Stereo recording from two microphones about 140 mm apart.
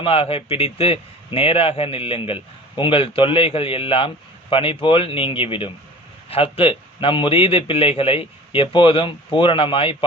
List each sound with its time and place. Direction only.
0.0 s a man's voice: 40° left (ahead or behind)